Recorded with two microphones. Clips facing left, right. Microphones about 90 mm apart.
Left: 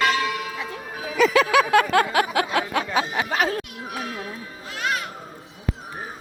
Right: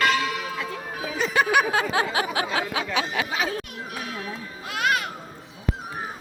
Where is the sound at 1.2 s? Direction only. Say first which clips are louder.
Left 4 dB; 90° left; by 2.8 s 60° left (ahead or behind).